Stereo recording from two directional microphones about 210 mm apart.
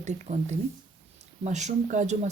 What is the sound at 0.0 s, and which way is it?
Speech, 35° right (ahead or behind).